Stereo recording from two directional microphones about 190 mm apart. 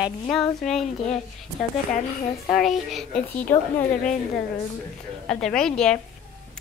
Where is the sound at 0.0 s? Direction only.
Centre (ahead or behind).